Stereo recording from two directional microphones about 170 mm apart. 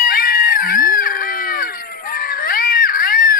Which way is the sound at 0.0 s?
55° left (ahead or behind).